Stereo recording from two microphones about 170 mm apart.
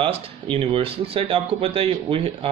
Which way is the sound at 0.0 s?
30° right (ahead or behind).